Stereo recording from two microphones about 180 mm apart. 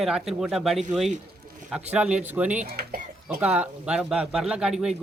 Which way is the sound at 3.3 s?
10° right (ahead or behind).